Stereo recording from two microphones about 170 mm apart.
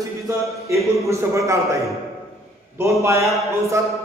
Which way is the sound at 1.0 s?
15° right (ahead or behind).